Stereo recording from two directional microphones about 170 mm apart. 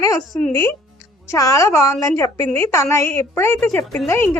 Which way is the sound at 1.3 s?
20° left (ahead or behind).